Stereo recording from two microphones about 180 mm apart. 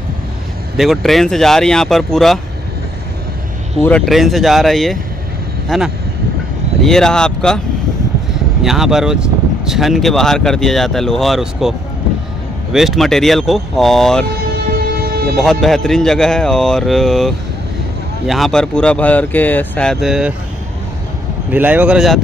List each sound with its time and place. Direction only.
0.7 s speech: centre (ahead or behind)
3.8 s speech: 5° left (ahead or behind)
8.6 s speech: centre (ahead or behind)
12.7 s speech: centre (ahead or behind)
15.0 s vehicle: 55° right (ahead or behind)
15.4 s speech: centre (ahead or behind)
21.5 s speech: 10° right (ahead or behind)